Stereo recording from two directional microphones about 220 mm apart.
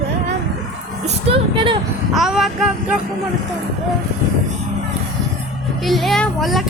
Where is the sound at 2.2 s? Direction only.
Centre (ahead or behind).